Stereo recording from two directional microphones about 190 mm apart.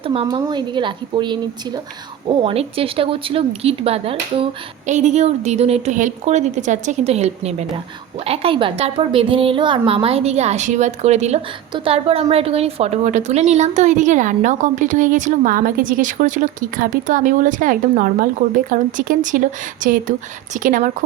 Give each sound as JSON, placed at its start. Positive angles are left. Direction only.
{"t": 0.0, "sound": "a woman's voice", "side_deg": -30}